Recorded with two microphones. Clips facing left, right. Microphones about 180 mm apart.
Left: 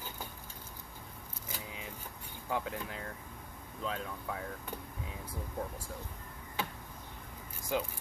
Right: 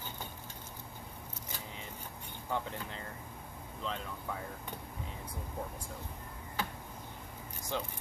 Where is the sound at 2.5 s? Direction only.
5° left (ahead or behind).